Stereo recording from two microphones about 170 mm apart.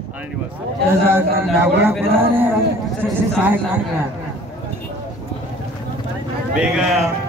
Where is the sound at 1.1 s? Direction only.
10° right (ahead or behind).